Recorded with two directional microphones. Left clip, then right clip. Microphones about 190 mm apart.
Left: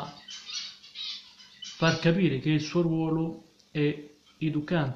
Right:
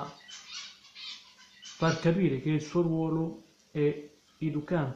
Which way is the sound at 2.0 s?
10° right (ahead or behind).